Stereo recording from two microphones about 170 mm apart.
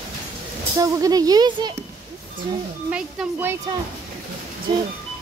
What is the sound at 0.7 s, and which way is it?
Speech, 20° right (ahead or behind).